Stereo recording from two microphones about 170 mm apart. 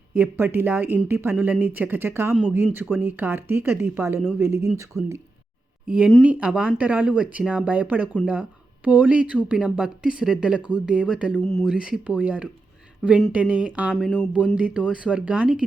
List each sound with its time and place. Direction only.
0.2 s speech: 15° right (ahead or behind)
2.3 s speech: centre (ahead or behind)
4.9 s speech: centre (ahead or behind)
14.3 s speech: 5° right (ahead or behind)